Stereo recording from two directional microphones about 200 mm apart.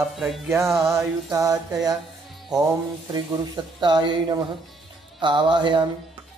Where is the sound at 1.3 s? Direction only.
20° right (ahead or behind).